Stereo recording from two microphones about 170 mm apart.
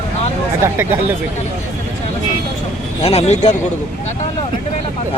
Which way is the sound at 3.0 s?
40° left (ahead or behind).